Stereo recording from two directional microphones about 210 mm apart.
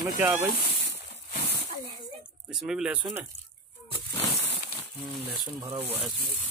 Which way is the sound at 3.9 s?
25° left (ahead or behind).